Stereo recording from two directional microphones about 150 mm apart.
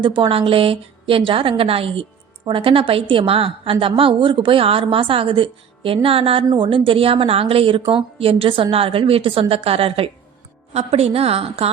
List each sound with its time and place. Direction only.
0.0 s a woman's voice: 35° right (ahead or behind)